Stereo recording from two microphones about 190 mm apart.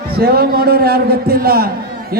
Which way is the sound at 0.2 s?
55° right (ahead or behind).